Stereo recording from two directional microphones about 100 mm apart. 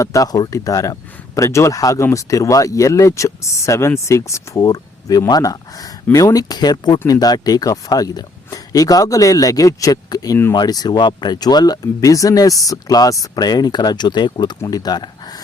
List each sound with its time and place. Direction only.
0.0 s speech: 35° left (ahead or behind)